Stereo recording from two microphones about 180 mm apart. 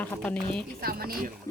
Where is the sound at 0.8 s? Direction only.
60° right (ahead or behind).